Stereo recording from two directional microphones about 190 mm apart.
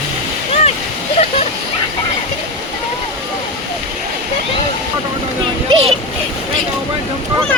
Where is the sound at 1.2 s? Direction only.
30° left (ahead or behind).